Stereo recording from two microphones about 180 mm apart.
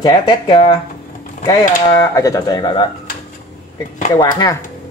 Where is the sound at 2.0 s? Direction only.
20° left (ahead or behind).